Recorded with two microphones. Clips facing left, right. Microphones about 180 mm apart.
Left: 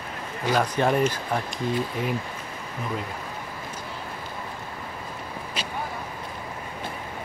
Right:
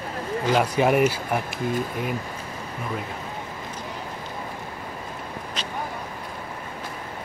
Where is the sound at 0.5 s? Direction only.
10° right (ahead or behind).